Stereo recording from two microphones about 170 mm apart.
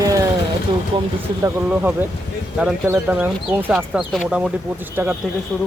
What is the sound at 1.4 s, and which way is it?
Speech, 10° right (ahead or behind).